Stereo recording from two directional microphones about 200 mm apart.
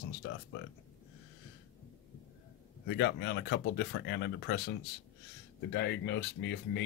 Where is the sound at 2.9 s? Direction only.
60° left (ahead or behind).